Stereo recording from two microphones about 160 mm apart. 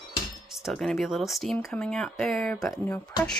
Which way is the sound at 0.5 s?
Centre (ahead or behind).